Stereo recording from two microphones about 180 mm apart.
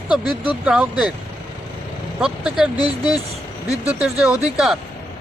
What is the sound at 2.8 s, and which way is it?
Speech, 20° left (ahead or behind).